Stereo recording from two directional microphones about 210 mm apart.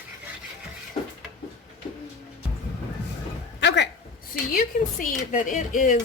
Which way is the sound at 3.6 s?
55° left (ahead or behind).